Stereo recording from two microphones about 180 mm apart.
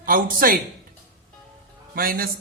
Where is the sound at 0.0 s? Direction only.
50° right (ahead or behind).